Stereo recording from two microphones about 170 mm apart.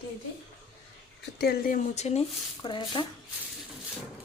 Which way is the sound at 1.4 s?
60° left (ahead or behind).